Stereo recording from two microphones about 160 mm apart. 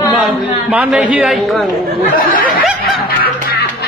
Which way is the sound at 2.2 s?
60° left (ahead or behind).